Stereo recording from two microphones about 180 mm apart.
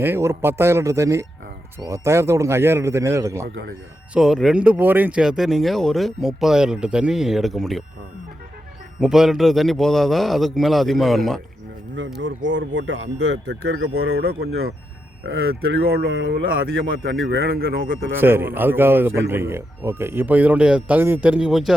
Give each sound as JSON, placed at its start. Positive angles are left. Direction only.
{"t": 0.0, "sound": "speech", "side_deg": -15}
{"t": 4.1, "sound": "speech", "side_deg": -5}
{"t": 9.0, "sound": "speech", "side_deg": 0}
{"t": 12.2, "sound": "speech", "side_deg": -90}
{"t": 13.5, "sound": "speech", "side_deg": -65}
{"t": 17.1, "sound": "speech", "side_deg": -75}
{"t": 18.2, "sound": "speech", "side_deg": -10}